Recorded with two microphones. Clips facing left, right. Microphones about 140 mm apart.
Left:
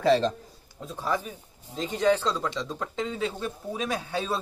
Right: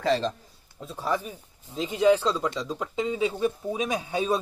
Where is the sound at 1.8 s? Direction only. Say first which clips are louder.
Right 3 dB; 5° right (ahead or behind).